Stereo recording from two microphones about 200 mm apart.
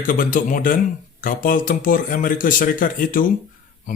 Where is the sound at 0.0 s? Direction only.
45° left (ahead or behind).